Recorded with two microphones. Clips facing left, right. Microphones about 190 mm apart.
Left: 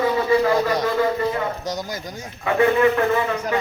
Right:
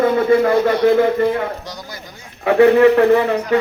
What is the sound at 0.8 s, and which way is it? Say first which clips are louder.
Speech: right 7 dB; 55° right (ahead or behind).